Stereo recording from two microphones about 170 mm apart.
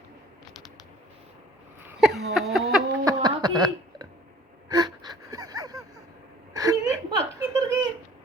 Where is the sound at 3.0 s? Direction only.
25° right (ahead or behind).